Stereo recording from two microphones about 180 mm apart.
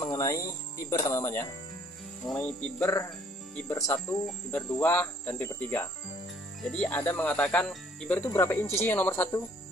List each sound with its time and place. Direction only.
0.0 s music: 20° left (ahead or behind)
0.8 s speech: 20° left (ahead or behind)
2.2 s speech: 5° left (ahead or behind)